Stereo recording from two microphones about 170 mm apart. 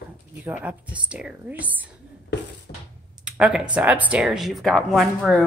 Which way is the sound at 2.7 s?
55° left (ahead or behind).